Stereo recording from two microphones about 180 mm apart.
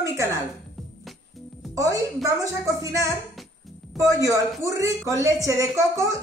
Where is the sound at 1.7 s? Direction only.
20° right (ahead or behind).